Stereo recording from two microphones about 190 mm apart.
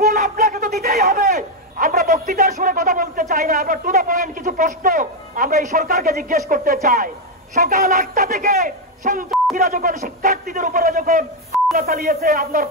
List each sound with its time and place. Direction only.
0.0 s a man's voice: 45° right (ahead or behind)